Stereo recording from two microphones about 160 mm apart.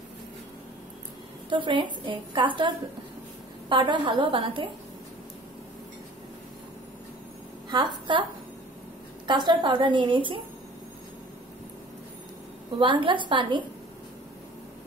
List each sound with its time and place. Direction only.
1.5 s a woman's voice: 30° right (ahead or behind)
7.7 s a woman's voice: 30° right (ahead or behind)
9.3 s a woman's voice: 30° right (ahead or behind)
12.7 s a woman's voice: 30° right (ahead or behind)